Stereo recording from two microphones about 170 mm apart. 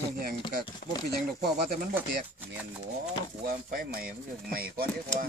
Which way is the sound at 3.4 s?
60° right (ahead or behind).